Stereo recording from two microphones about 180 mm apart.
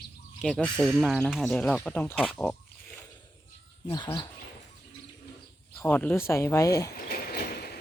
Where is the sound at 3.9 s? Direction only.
25° left (ahead or behind).